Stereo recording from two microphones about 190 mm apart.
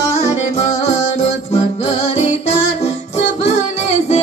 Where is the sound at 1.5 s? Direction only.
30° left (ahead or behind).